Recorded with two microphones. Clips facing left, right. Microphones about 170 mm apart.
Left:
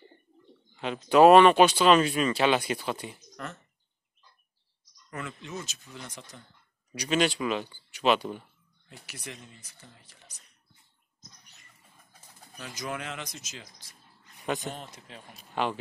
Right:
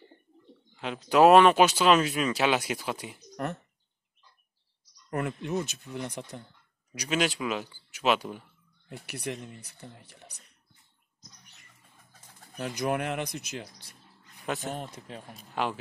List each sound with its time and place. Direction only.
0.7 s speech: centre (ahead or behind)
5.1 s speech: 55° right (ahead or behind)
6.9 s speech: 10° right (ahead or behind)
8.8 s speech: 60° right (ahead or behind)
12.5 s speech: 60° right (ahead or behind)
14.4 s speech: centre (ahead or behind)
14.9 s speech: 40° right (ahead or behind)
15.5 s speech: 5° right (ahead or behind)